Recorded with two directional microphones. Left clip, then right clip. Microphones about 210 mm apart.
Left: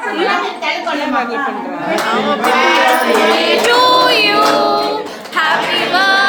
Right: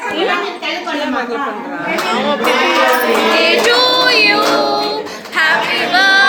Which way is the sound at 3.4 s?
5° left (ahead or behind).